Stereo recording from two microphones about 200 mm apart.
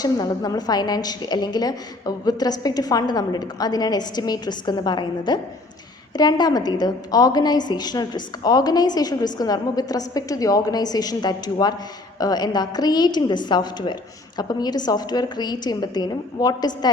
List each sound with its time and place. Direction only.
0.0 s a woman's voice: 20° left (ahead or behind)